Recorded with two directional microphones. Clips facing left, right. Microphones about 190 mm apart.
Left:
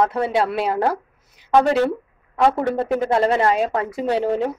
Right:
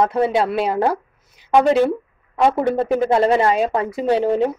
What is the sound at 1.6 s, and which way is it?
A woman's voice, 15° right (ahead or behind).